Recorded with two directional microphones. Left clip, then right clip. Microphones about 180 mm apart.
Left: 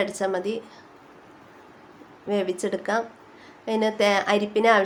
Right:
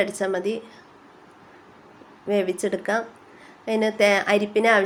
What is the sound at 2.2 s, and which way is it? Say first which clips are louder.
Speech: right 2 dB; 15° right (ahead or behind).